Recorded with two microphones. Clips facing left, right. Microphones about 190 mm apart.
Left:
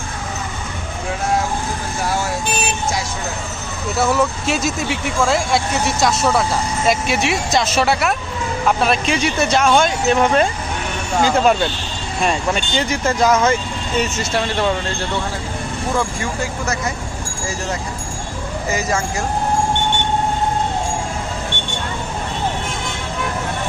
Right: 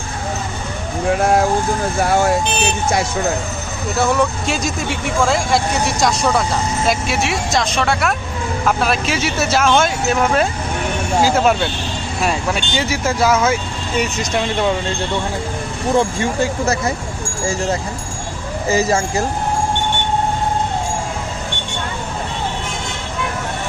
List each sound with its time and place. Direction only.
1.1 s vehicle: 55° right (ahead or behind)
2.0 s speech: 60° right (ahead or behind)
3.9 s speech: 5° left (ahead or behind); by 14.7 s 15° right (ahead or behind)
16.0 s speech: 25° right (ahead or behind)
18.7 s speech: 30° right (ahead or behind)